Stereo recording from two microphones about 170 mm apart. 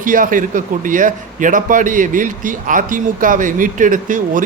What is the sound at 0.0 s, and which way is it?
Speech, 50° right (ahead or behind).